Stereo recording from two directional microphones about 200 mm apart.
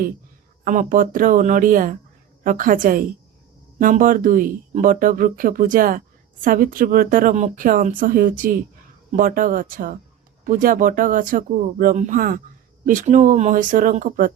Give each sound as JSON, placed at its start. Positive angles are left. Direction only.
{"t": 0.6, "sound": "speech", "side_deg": -40}